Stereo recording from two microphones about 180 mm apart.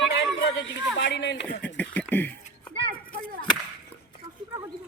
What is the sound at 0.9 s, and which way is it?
Speech, 90° left.